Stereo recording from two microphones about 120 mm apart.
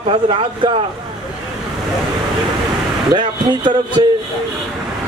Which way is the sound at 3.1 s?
40° right (ahead or behind).